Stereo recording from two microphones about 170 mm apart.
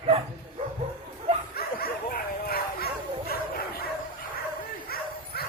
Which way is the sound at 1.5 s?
65° left (ahead or behind).